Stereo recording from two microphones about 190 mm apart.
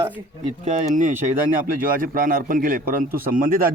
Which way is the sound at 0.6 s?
40° right (ahead or behind).